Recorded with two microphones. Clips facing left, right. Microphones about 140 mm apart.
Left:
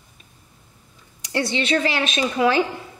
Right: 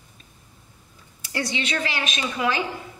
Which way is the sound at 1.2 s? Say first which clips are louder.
Left 5 dB; 30° left (ahead or behind).